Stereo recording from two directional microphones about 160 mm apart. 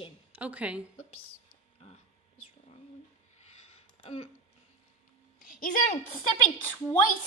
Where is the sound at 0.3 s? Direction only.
10° right (ahead or behind).